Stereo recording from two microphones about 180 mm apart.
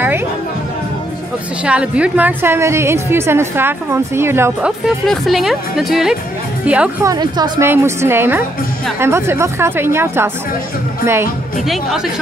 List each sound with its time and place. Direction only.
1.6 s a woman's voice: 5° right (ahead or behind)
7.1 s a woman's voice: 25° right (ahead or behind)
11.6 s speech: centre (ahead or behind)